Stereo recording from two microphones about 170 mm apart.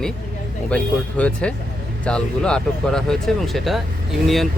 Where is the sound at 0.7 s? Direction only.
5° left (ahead or behind).